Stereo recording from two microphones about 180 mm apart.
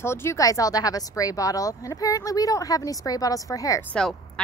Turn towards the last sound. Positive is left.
turn(degrees=5)  # may be behind; listen again after turning